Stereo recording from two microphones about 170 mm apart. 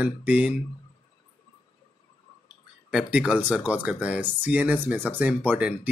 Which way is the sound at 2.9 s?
5° right (ahead or behind).